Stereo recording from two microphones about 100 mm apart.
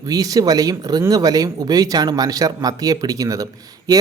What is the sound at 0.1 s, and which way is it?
Speech, 40° right (ahead or behind).